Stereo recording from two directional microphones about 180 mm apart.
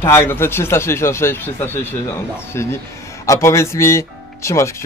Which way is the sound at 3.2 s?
15° left (ahead or behind).